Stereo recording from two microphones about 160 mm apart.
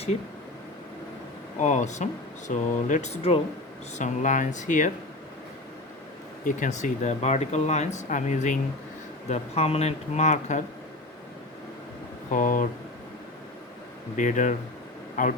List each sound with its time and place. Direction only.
1.5 s speech: 50° left (ahead or behind)
6.4 s speech: 50° left (ahead or behind)
9.3 s speech: 40° left (ahead or behind)
12.3 s speech: 55° left (ahead or behind)
14.2 s speech: 50° left (ahead or behind)